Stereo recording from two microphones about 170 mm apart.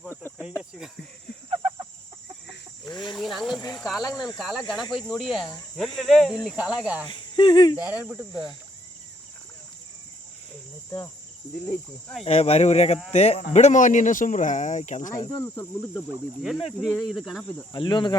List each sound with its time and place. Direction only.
0.1 s cricket: 15° left (ahead or behind)
2.8 s cricket: 25° left (ahead or behind)
3.1 s a sound: centre (ahead or behind)
3.8 s speech: 5° right (ahead or behind)
4.9 s speech: 30° left (ahead or behind)
5.1 s speech: centre (ahead or behind)
7.1 s speech: 30° left (ahead or behind)
7.9 s speech: 10° right (ahead or behind)
8.3 s speech: 25° left (ahead or behind)
11.7 s speech: centre (ahead or behind)
12.2 s speech: 35° left (ahead or behind)
16.4 s speech: centre (ahead or behind)
17.7 s speech: 30° left (ahead or behind)